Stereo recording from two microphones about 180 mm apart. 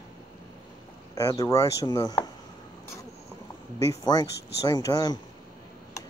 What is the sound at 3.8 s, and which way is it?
Speech, 20° left (ahead or behind).